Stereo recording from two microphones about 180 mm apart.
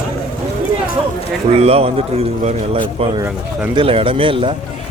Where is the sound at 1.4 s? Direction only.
35° right (ahead or behind).